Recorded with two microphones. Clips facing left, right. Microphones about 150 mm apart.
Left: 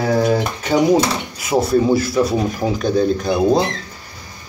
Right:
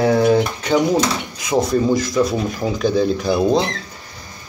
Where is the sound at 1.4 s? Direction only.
5° left (ahead or behind).